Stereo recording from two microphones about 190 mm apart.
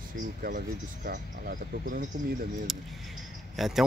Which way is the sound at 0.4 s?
50° right (ahead or behind).